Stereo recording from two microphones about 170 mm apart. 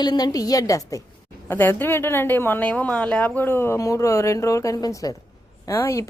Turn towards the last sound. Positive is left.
turn(degrees=15)  # may be behind; listen again after turning